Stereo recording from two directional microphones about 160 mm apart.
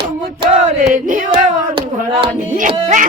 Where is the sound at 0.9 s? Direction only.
55° right (ahead or behind).